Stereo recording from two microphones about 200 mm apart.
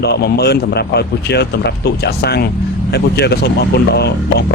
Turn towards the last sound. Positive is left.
turn(degrees=55)  # may be behind; listen again after turning